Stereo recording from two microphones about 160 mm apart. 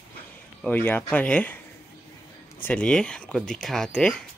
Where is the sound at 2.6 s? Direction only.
10° left (ahead or behind).